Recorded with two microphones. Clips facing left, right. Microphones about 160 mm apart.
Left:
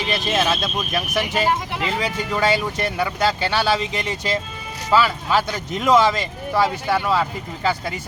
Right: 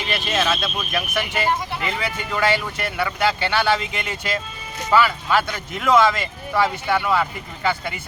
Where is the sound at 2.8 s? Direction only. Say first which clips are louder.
Left 1 dB; 35° left (ahead or behind).